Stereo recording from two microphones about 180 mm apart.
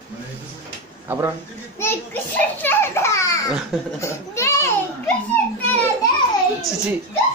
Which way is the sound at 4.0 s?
15° left (ahead or behind).